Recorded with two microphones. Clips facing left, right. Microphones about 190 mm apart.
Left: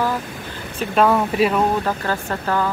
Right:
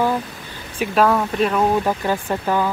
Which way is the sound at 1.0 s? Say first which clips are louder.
Left 1 dB; 5° left (ahead or behind).